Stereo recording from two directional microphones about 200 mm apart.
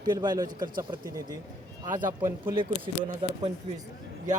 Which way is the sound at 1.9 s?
40° right (ahead or behind).